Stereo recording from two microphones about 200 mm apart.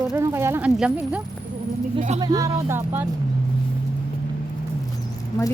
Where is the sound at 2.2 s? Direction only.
20° right (ahead or behind).